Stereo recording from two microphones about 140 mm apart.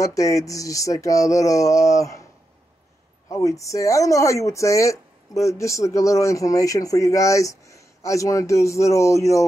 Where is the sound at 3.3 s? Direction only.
25° left (ahead or behind).